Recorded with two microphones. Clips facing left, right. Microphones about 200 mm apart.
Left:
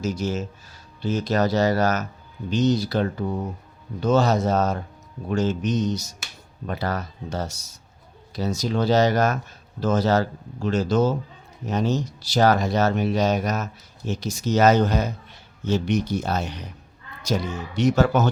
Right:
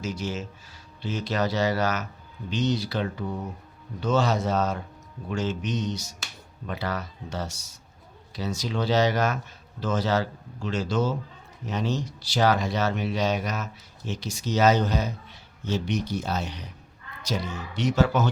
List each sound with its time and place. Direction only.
0.0 s speech: 40° left (ahead or behind)